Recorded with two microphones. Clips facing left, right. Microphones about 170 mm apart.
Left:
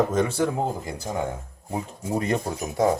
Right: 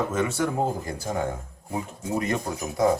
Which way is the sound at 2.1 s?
30° left (ahead or behind).